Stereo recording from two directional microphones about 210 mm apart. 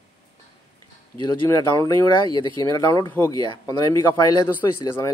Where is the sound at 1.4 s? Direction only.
15° left (ahead or behind).